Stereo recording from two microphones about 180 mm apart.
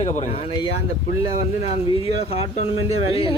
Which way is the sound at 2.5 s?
35° left (ahead or behind).